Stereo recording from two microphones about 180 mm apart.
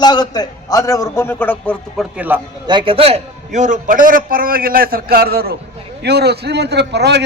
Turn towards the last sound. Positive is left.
turn(degrees=-70)  # may be behind; listen again after turning